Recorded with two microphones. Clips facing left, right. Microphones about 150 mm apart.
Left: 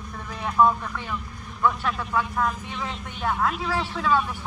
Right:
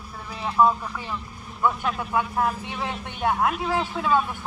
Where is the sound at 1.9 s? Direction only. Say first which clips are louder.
Right 1 dB; 25° right (ahead or behind).